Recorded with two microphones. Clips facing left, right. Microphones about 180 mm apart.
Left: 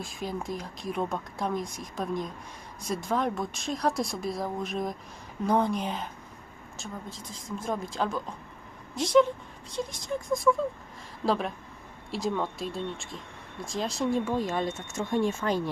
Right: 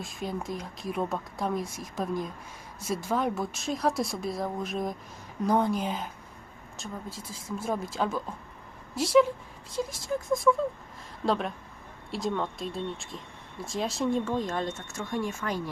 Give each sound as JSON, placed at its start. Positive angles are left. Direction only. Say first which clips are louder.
{"t": 0.0, "sound": "speech", "louder": "even", "side_deg": 0}
{"t": 14.9, "sound": "speech", "louder": "left 6 dB", "side_deg": 25}